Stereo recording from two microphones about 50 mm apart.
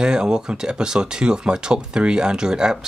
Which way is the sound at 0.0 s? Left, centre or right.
Centre.